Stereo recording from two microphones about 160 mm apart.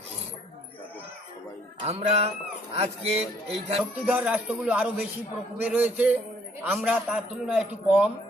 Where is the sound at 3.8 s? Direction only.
10° right (ahead or behind).